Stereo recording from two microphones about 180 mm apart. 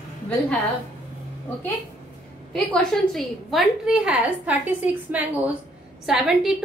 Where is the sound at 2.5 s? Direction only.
5° left (ahead or behind).